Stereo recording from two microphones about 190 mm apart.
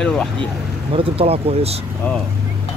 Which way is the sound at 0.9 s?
30° right (ahead or behind).